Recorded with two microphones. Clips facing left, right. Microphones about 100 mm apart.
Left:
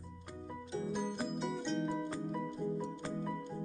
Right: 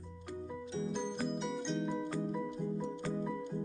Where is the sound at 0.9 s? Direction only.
5° left (ahead or behind).